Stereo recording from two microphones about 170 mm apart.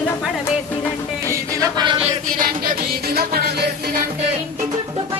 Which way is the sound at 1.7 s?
30° right (ahead or behind).